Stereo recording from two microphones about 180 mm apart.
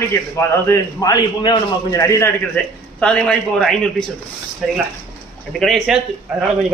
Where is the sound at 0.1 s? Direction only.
15° left (ahead or behind).